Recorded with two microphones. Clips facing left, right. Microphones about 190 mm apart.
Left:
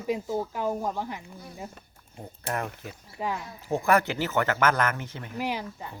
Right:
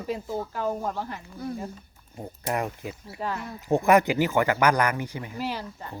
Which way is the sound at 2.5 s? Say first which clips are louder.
Right 3 dB; 15° right (ahead or behind).